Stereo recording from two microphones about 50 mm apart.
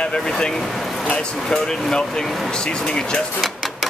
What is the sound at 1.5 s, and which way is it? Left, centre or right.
Speech, centre.